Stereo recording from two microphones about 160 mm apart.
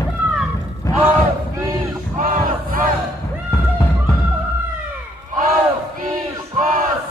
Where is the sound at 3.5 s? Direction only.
15° left (ahead or behind).